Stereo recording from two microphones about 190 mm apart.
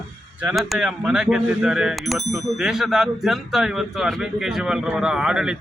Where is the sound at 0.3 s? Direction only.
5° right (ahead or behind).